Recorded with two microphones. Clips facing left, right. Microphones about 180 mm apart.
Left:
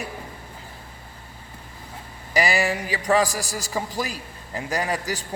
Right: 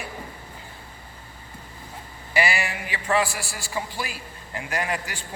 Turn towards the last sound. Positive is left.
turn(degrees=35)  # may be behind; listen again after turning